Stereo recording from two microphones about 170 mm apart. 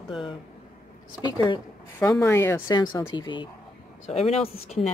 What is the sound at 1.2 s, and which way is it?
Speech, centre (ahead or behind).